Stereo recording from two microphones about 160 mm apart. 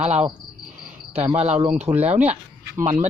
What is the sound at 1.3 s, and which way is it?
Speech, 40° right (ahead or behind).